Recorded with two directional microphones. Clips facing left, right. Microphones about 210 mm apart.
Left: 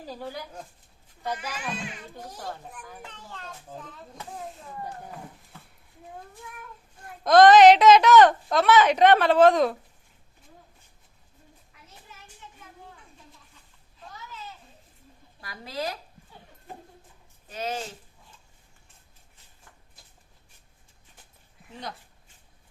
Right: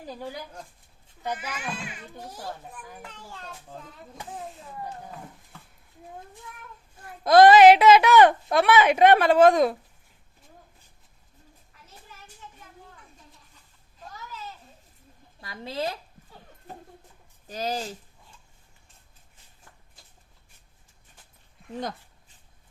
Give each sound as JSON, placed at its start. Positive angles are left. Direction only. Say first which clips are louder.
{"t": 1.2, "sound": "a woman's voice", "louder": "even", "side_deg": -10}
{"t": 7.3, "sound": "a woman's voice", "louder": "even", "side_deg": -10}
{"t": 15.4, "sound": "a woman's voice", "louder": "right 2 dB", "side_deg": -25}
{"t": 17.5, "sound": "speech", "louder": "right 2 dB", "side_deg": -35}